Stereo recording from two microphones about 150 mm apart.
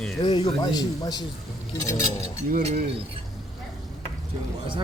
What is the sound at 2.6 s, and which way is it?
Speech, 50° right (ahead or behind).